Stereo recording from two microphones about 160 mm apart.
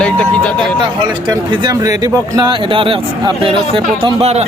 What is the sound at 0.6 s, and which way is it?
Speech, 30° right (ahead or behind).